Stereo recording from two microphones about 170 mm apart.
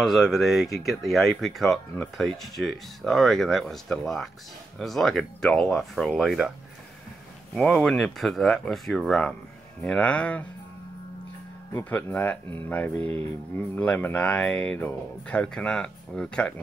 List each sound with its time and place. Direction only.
0.0 s speech: centre (ahead or behind)
7.5 s speech: 5° left (ahead or behind)
11.8 s speech: 10° left (ahead or behind)